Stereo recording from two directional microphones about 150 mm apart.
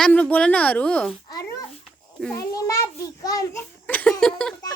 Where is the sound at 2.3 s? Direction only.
20° left (ahead or behind).